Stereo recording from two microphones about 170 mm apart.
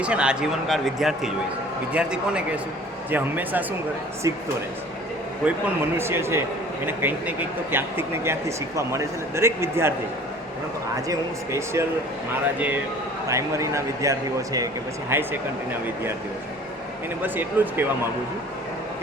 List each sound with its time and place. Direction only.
0.0 s a man's voice: 5° right (ahead or behind)
5.5 s a man's voice: 15° right (ahead or behind)
11.1 s a man's voice: 15° right (ahead or behind)
13.2 s a man's voice: 15° right (ahead or behind)
17.2 s a man's voice: 10° right (ahead or behind)